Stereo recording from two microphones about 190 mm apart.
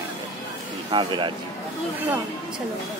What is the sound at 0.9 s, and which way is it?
Speech, 25° right (ahead or behind).